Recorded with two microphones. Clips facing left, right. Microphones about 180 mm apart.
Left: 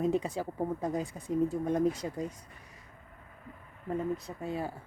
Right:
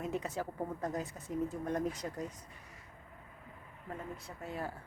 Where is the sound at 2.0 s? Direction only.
15° left (ahead or behind).